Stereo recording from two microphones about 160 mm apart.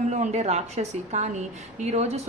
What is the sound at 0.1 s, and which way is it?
A woman's voice, 45° right (ahead or behind).